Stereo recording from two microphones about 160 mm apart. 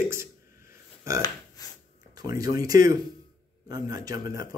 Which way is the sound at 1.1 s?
20° right (ahead or behind).